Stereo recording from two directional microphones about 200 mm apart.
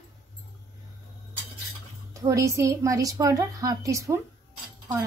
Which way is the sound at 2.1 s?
15° right (ahead or behind).